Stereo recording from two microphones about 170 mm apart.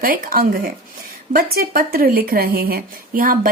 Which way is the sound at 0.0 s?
55° right (ahead or behind).